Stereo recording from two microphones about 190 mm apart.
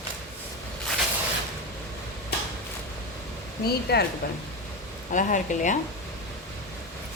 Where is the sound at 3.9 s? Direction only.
55° left (ahead or behind).